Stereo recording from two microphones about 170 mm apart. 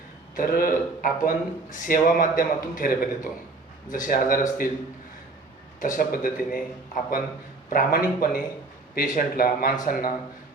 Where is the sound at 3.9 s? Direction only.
55° left (ahead or behind).